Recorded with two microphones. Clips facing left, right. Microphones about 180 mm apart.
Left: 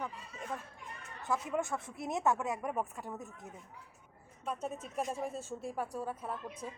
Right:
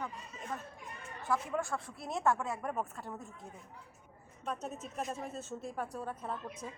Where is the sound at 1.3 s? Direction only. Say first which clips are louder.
Even; 20° left (ahead or behind).